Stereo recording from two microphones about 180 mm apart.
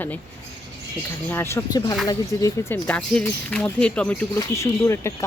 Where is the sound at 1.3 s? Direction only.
15° left (ahead or behind).